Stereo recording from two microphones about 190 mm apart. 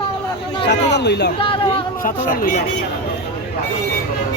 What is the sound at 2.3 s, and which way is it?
Speech, 50° left (ahead or behind).